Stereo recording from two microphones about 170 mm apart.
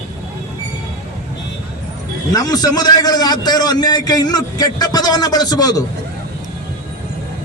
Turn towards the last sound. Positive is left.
turn(degrees=20)  # may be behind; listen again after turning